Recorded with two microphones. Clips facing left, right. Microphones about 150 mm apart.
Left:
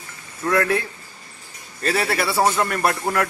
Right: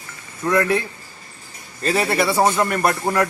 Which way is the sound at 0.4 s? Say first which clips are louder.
Right 1 dB; 10° right (ahead or behind).